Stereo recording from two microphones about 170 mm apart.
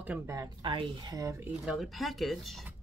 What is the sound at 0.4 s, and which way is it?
Speech, 30° right (ahead or behind).